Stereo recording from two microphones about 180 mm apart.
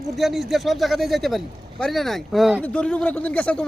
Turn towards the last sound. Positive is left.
turn(degrees=5)  # may be behind; listen again after turning